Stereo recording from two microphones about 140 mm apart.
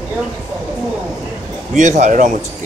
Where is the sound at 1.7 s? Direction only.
60° right (ahead or behind).